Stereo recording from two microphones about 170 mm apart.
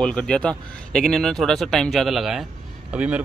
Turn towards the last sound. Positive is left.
turn(degrees=-10)  # may be behind; listen again after turning